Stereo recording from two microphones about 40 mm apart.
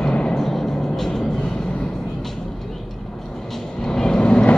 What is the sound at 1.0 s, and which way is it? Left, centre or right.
Vehicle, centre.